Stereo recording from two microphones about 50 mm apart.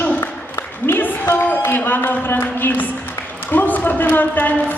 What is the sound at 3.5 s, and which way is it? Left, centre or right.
A man's voice, left.